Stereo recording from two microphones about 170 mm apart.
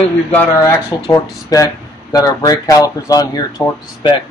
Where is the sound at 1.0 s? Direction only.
20° left (ahead or behind).